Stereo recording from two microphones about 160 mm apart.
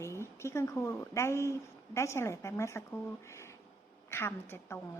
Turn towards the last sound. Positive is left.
turn(degrees=15)  # may be behind; listen again after turning